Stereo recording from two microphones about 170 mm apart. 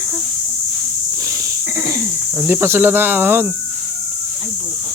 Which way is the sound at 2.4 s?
10° right (ahead or behind).